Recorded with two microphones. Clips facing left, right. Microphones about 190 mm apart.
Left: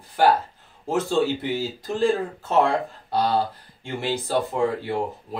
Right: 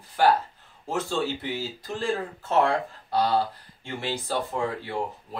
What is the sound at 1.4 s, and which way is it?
Speech, 15° left (ahead or behind).